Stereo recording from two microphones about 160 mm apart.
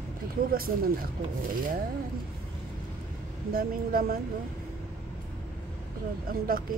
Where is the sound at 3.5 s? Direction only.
65° right (ahead or behind).